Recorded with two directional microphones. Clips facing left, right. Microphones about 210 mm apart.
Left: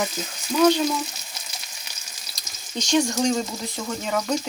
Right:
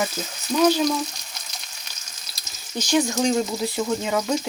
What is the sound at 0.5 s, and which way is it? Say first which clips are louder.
Speech: even; 10° right (ahead or behind).